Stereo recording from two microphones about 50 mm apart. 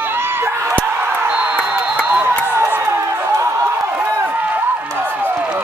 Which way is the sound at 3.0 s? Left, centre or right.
Right.